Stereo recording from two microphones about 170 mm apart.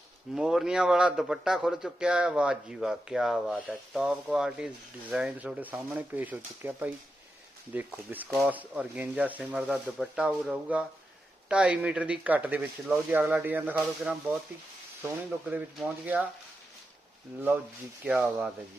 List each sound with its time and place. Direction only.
0.3 s a man's voice: 5° right (ahead or behind)
18.0 s speech: 5° right (ahead or behind)